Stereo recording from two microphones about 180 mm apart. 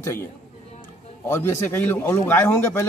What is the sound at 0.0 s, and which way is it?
Speech, 15° left (ahead or behind).